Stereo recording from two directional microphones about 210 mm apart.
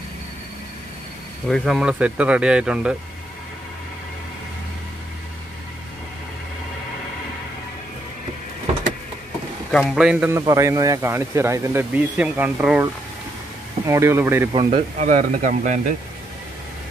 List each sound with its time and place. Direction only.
1.5 s speech: centre (ahead or behind)
9.7 s a man's voice: centre (ahead or behind)
14.7 s speech: 35° right (ahead or behind)